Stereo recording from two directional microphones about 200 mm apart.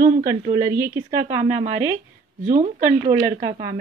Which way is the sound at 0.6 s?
15° right (ahead or behind).